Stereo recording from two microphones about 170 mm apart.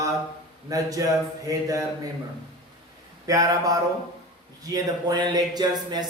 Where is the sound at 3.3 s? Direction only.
20° right (ahead or behind).